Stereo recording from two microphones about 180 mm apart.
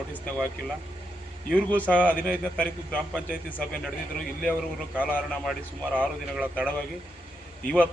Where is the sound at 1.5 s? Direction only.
10° left (ahead or behind).